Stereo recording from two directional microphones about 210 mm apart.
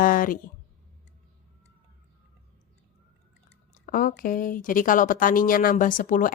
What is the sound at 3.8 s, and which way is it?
Speech, 40° left (ahead or behind).